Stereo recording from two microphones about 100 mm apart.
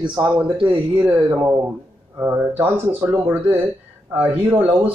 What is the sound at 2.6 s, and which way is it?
Speech, 20° right (ahead or behind).